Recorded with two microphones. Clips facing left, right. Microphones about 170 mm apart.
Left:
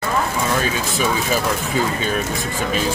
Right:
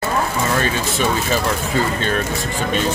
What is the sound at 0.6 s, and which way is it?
Speech, 5° left (ahead or behind).